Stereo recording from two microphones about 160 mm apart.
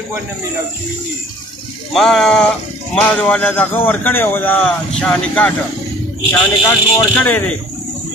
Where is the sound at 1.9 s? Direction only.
Centre (ahead or behind).